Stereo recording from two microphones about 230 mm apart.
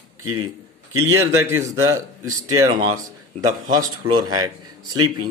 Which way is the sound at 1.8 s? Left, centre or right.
Centre.